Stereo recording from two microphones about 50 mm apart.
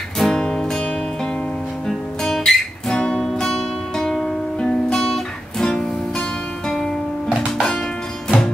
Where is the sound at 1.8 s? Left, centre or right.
Centre.